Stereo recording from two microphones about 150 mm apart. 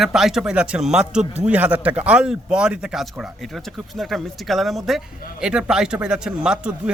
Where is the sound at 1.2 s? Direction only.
45° right (ahead or behind).